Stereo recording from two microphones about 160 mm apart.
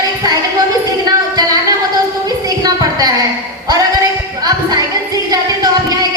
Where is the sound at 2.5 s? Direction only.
25° right (ahead or behind).